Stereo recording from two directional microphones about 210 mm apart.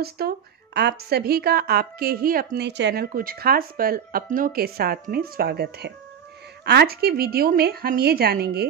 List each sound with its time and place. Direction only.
0.2 s a woman's voice: 45° right (ahead or behind)